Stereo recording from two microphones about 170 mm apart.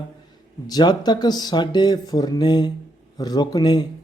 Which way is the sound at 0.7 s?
25° left (ahead or behind).